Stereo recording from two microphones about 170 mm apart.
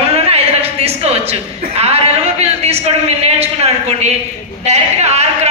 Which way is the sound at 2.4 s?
35° right (ahead or behind).